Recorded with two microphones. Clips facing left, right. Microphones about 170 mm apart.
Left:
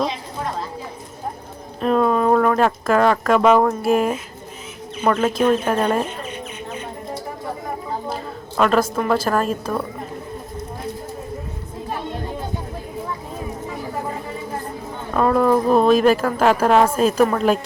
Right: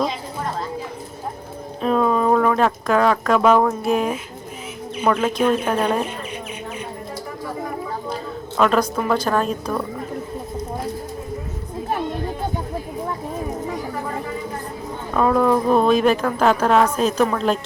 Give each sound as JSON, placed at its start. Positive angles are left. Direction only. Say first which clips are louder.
{"t": 1.8, "sound": "speech", "louder": "left 1 dB", "side_deg": 0}
{"t": 8.1, "sound": "a woman's voice", "louder": "even", "side_deg": 0}
{"t": 15.1, "sound": "speech", "louder": "left 1 dB", "side_deg": 0}